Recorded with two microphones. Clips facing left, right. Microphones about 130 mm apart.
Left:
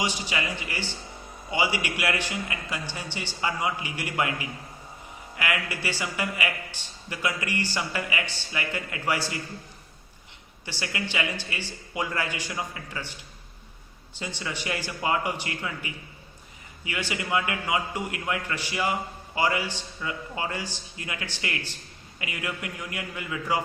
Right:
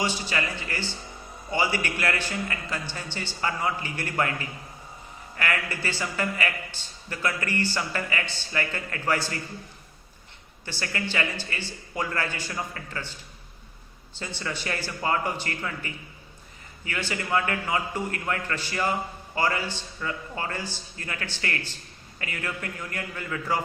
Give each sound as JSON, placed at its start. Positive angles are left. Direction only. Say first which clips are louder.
{"t": 0.0, "sound": "a man's voice", "louder": "right 1 dB", "side_deg": 15}
{"t": 10.7, "sound": "a man's voice", "louder": "right 1 dB", "side_deg": 15}
{"t": 14.2, "sound": "a man's voice", "louder": "even", "side_deg": 15}